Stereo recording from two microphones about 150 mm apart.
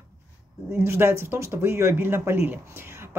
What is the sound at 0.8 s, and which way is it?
Speech, 15° right (ahead or behind).